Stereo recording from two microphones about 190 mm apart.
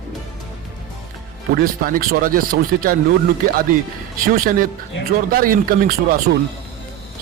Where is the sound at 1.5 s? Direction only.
50° right (ahead or behind).